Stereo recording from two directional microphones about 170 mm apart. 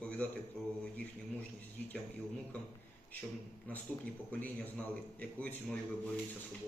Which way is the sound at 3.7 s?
10° left (ahead or behind).